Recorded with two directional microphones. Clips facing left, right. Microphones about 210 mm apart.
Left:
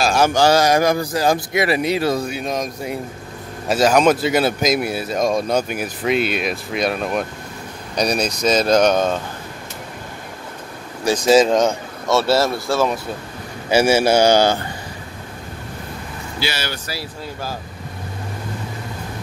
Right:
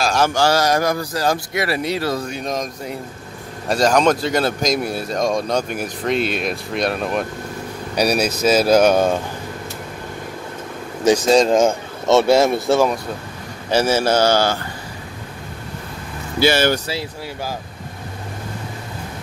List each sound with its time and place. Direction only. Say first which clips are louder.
0.0 s speech: left 2 dB; 10° left (ahead or behind); by 9.2 s 10° right (ahead or behind)
11.2 s speech: left 4 dB; 5° left (ahead or behind)
12.1 s speech: right 3 dB; 20° right (ahead or behind)
13.7 s speech: left 2 dB; 10° left (ahead or behind)
16.3 s speech: right 11 dB; 50° right (ahead or behind)